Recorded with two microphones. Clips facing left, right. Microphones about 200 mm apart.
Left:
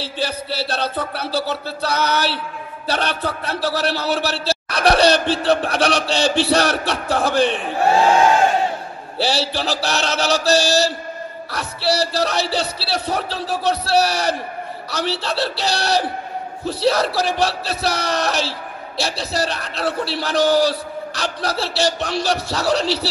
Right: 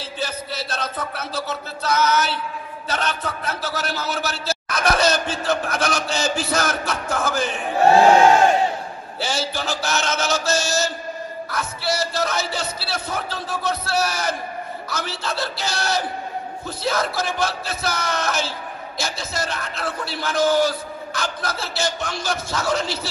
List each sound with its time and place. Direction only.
0.0 s a man's voice: 35° left (ahead or behind)
9.2 s a man's voice: 35° left (ahead or behind)